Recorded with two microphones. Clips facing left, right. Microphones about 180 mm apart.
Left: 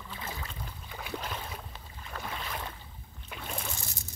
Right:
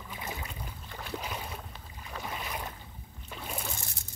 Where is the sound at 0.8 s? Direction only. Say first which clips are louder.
Even; centre (ahead or behind).